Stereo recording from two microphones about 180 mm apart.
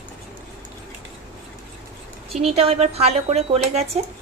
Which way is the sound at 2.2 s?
35° right (ahead or behind).